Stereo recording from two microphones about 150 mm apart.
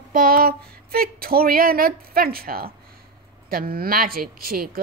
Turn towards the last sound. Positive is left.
turn(degrees=-80)